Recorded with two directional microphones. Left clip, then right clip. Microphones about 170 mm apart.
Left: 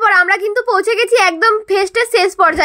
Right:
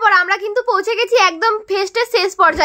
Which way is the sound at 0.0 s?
20° left (ahead or behind).